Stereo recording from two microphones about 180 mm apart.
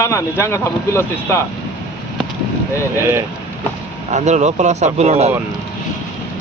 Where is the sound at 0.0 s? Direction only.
15° left (ahead or behind).